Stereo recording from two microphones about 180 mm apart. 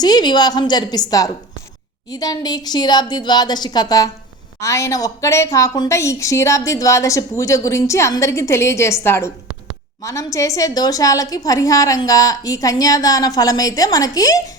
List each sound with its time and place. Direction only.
0.0 s a woman's voice: 25° left (ahead or behind)